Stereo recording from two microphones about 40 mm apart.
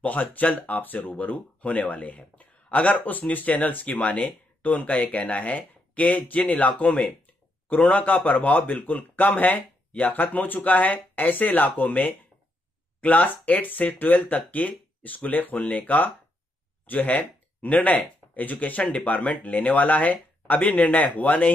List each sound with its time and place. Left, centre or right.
0.0 s speech: left
0.9 s speech: left
1.2 s speech: left
3.8 s speech: left
18.8 s speech: left
19.1 s speech: left